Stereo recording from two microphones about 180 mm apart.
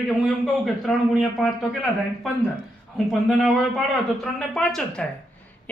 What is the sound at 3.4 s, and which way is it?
A man's voice, centre (ahead or behind).